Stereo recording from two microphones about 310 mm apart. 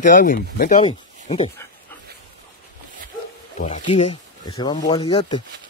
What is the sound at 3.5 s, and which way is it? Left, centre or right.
Speech, left.